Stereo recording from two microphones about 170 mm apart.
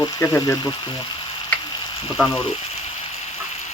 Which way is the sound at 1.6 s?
25° left (ahead or behind).